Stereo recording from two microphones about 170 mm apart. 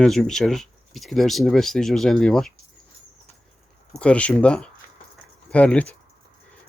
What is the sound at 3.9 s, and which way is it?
Speech, 5° left (ahead or behind).